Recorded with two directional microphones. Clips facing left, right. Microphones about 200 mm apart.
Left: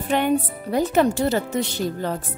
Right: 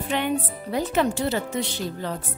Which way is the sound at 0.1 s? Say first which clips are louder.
Left 5 dB; 45° left (ahead or behind).